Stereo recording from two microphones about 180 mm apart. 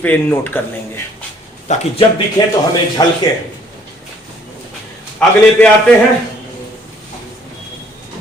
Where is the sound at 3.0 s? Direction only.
20° left (ahead or behind).